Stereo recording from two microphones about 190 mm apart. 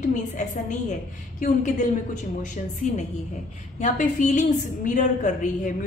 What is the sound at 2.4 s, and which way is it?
A woman's voice, 40° left (ahead or behind).